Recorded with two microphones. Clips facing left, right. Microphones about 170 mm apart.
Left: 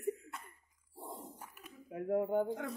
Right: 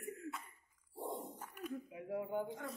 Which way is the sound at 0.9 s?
Centre (ahead or behind).